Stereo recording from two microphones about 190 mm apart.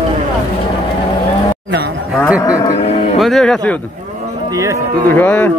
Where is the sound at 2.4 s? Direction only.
20° left (ahead or behind).